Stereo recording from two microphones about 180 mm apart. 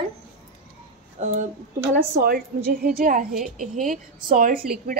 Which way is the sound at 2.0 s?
55° right (ahead or behind).